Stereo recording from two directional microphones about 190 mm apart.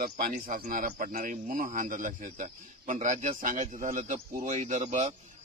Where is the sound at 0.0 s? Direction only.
50° right (ahead or behind).